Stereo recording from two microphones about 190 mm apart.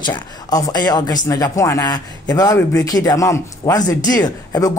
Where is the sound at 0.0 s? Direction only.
20° left (ahead or behind).